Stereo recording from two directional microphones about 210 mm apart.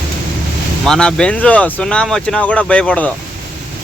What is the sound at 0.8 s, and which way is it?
Speech, 5° left (ahead or behind).